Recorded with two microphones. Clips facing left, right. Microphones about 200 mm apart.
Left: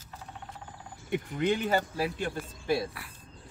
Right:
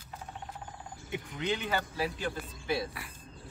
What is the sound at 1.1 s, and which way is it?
Speech, 50° left (ahead or behind).